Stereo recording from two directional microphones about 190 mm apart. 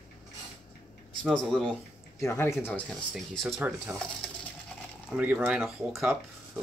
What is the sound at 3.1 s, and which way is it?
Speech, centre (ahead or behind).